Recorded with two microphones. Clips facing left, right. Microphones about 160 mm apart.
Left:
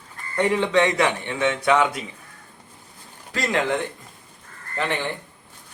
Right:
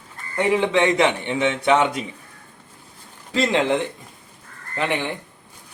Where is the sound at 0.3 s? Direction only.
10° right (ahead or behind).